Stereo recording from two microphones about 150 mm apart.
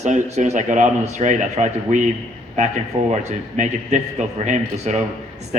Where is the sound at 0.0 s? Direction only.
50° right (ahead or behind).